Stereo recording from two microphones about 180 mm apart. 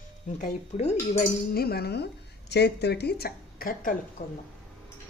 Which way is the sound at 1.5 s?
60° left (ahead or behind).